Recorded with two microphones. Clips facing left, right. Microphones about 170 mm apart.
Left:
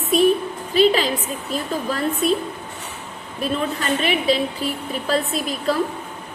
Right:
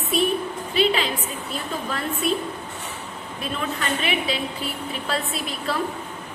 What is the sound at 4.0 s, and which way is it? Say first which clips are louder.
A woman's voice: left 6 dB; 40° left (ahead or behind).